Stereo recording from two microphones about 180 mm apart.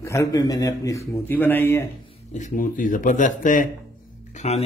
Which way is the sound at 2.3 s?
45° left (ahead or behind).